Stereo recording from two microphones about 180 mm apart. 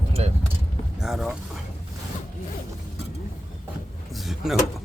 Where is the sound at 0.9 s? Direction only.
Centre (ahead or behind).